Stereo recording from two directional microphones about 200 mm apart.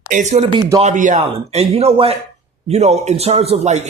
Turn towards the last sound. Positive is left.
turn(degrees=-35)  # may be behind; listen again after turning